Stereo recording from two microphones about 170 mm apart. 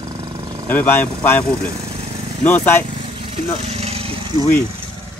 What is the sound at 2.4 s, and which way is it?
Speech, 10° left (ahead or behind).